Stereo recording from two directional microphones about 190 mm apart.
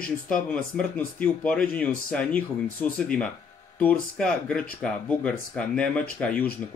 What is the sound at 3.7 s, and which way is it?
Speech, 5° left (ahead or behind).